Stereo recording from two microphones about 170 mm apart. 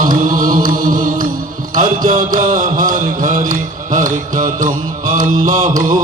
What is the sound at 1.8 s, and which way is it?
Mantra, 50° right (ahead or behind).